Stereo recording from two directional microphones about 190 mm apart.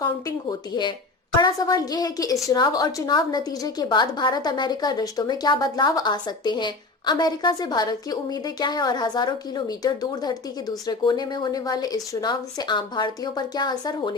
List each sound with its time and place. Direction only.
1.4 s a woman's voice: 20° left (ahead or behind)